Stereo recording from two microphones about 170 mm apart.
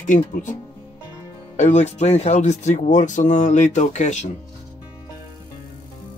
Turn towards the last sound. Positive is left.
turn(degrees=45)  # may be behind; listen again after turning